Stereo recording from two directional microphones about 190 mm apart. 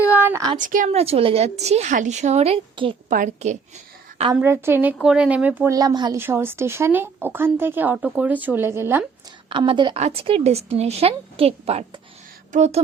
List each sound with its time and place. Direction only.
0.0 s a sound: 10° right (ahead or behind)
0.5 s a woman's voice: 45° right (ahead or behind)
3.1 s a woman's voice: 45° right (ahead or behind)
4.4 s speech: 10° right (ahead or behind)
9.5 s a woman's voice: 25° right (ahead or behind)